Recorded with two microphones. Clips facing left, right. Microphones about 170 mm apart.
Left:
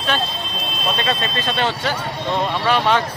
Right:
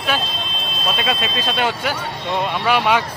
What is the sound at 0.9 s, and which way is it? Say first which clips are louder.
Speech: even; 10° right (ahead or behind).